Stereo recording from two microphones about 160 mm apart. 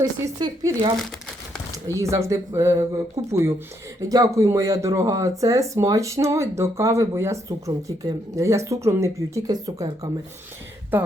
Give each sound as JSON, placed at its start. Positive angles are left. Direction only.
{"t": 0.0, "sound": "speech", "side_deg": -25}